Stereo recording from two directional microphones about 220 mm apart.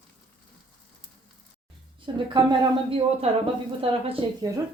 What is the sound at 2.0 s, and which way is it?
Speech, 20° right (ahead or behind).